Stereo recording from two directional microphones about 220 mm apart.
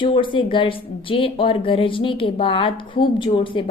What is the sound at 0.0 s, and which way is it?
A woman's voice, 20° left (ahead or behind).